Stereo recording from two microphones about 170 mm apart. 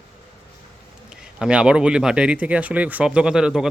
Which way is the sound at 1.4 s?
5° right (ahead or behind).